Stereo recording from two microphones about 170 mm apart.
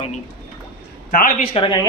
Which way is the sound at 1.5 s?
30° left (ahead or behind).